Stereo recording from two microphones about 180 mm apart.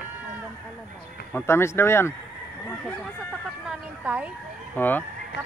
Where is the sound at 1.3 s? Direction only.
15° left (ahead or behind).